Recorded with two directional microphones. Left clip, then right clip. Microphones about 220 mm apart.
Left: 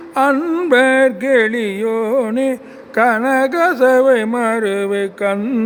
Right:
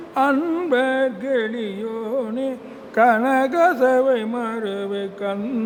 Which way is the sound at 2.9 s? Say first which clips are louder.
Left 2 dB; 10° left (ahead or behind).